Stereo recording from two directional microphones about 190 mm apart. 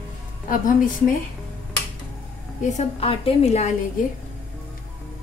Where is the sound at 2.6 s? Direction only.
35° left (ahead or behind).